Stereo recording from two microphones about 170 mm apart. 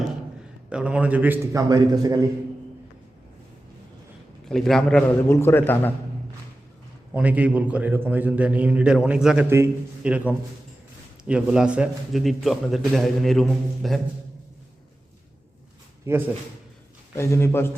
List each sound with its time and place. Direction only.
0.7 s a man's voice: 5° right (ahead or behind)
1.6 s a man's voice: 20° right (ahead or behind)
4.4 s a man's voice: 5° left (ahead or behind)
7.1 s a man's voice: 10° right (ahead or behind)
16.1 s a man's voice: 15° right (ahead or behind)
17.2 s a man's voice: 15° left (ahead or behind)